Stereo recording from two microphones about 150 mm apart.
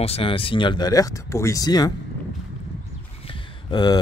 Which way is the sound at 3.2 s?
30° left (ahead or behind).